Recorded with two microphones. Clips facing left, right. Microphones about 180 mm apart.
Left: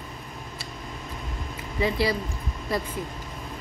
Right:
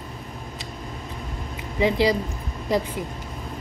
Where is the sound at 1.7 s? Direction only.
15° right (ahead or behind).